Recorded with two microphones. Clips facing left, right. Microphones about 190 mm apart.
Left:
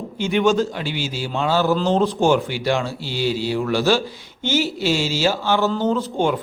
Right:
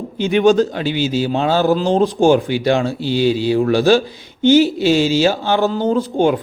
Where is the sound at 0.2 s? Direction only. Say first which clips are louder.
Right 5 dB; 20° right (ahead or behind).